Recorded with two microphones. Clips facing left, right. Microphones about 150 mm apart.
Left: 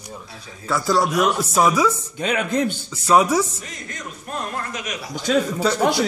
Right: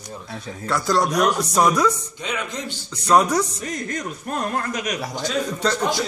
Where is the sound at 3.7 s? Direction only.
45° right (ahead or behind).